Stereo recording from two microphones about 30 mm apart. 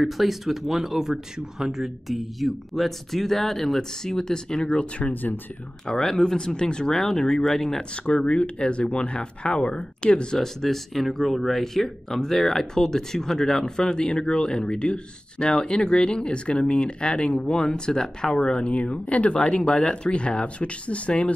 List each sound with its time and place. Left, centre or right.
0.0 s speech: centre
4.0 s speech: left
5.9 s speech: left
6.3 s speech: left
7.4 s speech: centre
8.3 s speech: left
10.3 s speech: centre; by 17.1 s left
17.1 s speech: left
19.4 s speech: left